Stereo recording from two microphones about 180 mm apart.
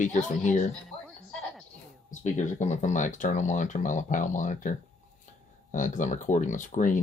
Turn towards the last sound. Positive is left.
turn(degrees=45)  # may be behind; listen again after turning